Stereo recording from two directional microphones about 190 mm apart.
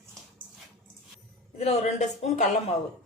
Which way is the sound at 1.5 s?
35° left (ahead or behind).